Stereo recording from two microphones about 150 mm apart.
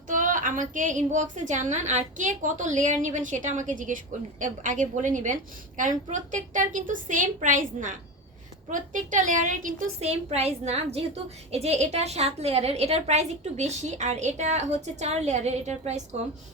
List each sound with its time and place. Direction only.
0.1 s a woman's voice: 60° right (ahead or behind)
10.0 s a woman's voice: 45° right (ahead or behind)